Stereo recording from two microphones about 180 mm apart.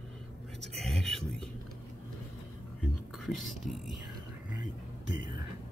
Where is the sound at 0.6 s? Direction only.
Centre (ahead or behind).